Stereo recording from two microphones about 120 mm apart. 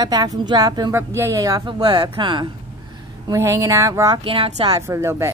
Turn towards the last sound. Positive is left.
turn(degrees=-20)  # may be behind; listen again after turning